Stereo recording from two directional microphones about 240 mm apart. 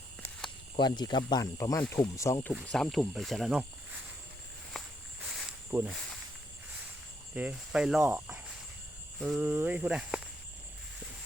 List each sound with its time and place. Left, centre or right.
0.8 s speech: centre
2.5 s speech: centre
5.4 s cricket: centre
7.3 s speech: centre